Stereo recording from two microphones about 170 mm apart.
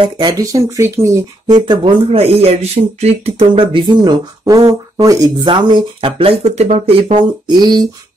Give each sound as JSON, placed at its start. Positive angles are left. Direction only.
{"t": 0.0, "sound": "speech", "side_deg": -25}
{"t": 2.0, "sound": "speech", "side_deg": -35}